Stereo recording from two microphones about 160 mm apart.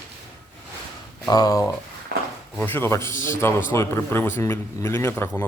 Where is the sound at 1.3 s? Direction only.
25° left (ahead or behind).